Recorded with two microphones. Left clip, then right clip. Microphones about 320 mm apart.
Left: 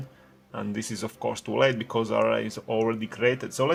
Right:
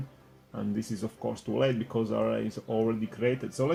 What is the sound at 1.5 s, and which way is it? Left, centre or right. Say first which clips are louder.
Speech: left 5 dB; left.